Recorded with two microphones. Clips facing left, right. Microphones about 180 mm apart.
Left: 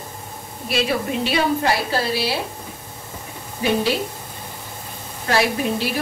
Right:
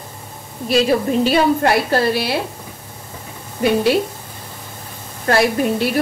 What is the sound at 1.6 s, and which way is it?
Speech, 55° right (ahead or behind).